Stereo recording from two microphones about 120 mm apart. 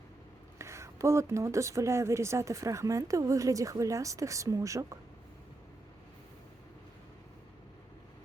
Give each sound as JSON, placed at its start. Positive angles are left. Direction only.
{"t": 0.6, "sound": "a woman's voice", "side_deg": -25}